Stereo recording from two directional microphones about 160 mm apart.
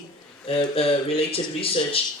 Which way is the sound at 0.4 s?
35° left (ahead or behind).